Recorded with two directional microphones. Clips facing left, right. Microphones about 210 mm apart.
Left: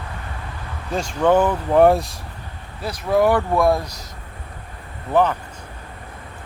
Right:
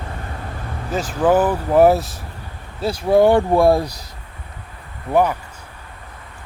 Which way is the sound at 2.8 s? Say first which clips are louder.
Right 4 dB; 30° right (ahead or behind).